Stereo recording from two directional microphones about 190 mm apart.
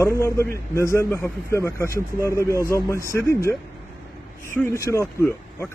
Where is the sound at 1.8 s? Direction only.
15° right (ahead or behind).